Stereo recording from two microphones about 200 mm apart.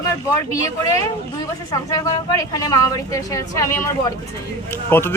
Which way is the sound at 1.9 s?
15° left (ahead or behind).